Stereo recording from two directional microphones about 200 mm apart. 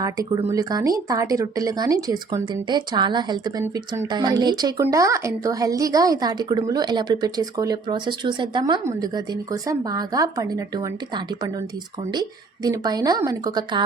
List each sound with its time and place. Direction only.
0.0 s a woman's voice: 20° right (ahead or behind)